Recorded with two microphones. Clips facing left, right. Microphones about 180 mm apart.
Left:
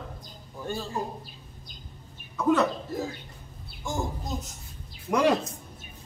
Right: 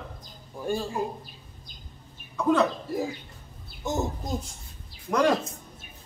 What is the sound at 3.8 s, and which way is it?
Speech, 20° right (ahead or behind).